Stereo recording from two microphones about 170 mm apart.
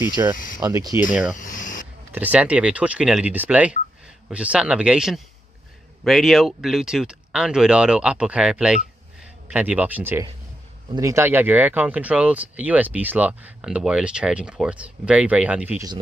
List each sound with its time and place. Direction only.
0.2 s speech: 20° right (ahead or behind)
1.3 s a sound: 45° left (ahead or behind)
2.1 s speech: 10° right (ahead or behind)